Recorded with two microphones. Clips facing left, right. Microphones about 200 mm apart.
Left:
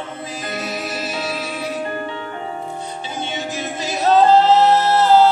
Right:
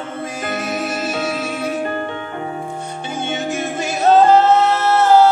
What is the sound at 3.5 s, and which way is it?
Music, 50° right (ahead or behind).